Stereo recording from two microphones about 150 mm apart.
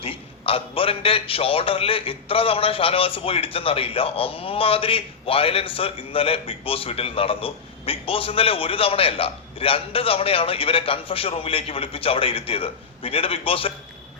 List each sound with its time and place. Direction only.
0.0 s a man's voice: 40° left (ahead or behind)